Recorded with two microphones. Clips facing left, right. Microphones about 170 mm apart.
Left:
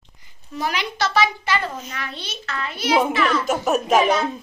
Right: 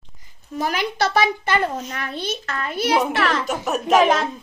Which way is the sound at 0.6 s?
45° right (ahead or behind).